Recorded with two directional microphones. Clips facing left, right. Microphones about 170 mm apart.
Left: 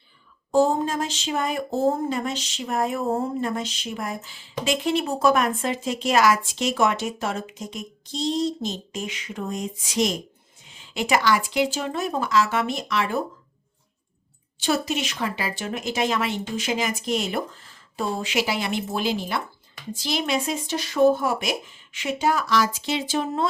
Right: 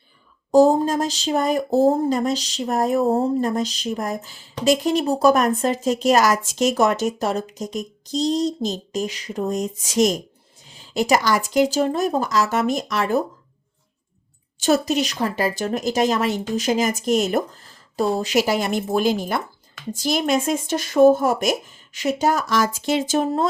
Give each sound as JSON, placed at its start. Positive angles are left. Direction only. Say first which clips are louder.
{"t": 0.5, "sound": "speech", "louder": "right 6 dB", "side_deg": -40}
{"t": 14.6, "sound": "speech", "louder": "right 6 dB", "side_deg": -40}